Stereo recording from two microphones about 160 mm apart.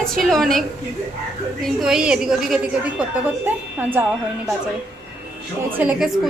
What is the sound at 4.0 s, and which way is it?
Speech, 10° right (ahead or behind).